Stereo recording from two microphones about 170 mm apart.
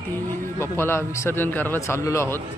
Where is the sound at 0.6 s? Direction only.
15° left (ahead or behind).